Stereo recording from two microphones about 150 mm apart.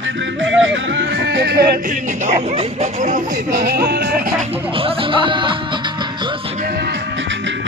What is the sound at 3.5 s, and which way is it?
Speech, 90° right.